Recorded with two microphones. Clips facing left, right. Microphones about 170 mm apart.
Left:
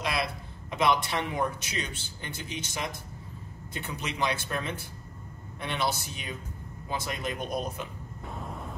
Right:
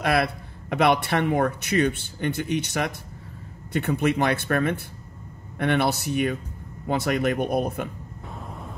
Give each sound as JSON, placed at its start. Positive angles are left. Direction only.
{"t": 0.0, "sound": "a man's voice", "side_deg": -60}
{"t": 8.3, "sound": "vehicle", "side_deg": 0}